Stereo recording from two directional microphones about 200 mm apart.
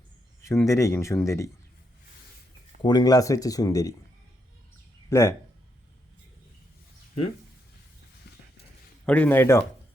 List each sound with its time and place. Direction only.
0.4 s speech: 15° left (ahead or behind)
2.8 s speech: 20° left (ahead or behind)
5.0 s speech: 15° left (ahead or behind)
9.0 s speech: 5° left (ahead or behind)